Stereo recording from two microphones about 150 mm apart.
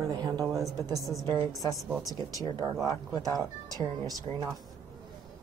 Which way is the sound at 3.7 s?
25° right (ahead or behind).